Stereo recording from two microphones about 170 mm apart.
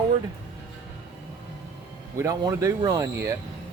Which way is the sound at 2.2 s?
20° right (ahead or behind).